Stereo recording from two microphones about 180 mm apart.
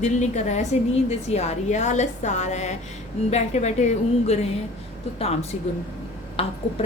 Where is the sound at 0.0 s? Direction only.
40° left (ahead or behind).